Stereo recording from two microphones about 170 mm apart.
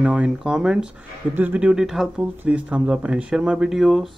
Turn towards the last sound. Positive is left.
turn(degrees=0)  # may be behind; listen again after turning